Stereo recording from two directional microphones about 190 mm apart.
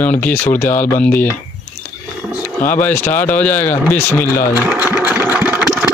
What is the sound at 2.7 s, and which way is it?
A man's voice, 10° left (ahead or behind).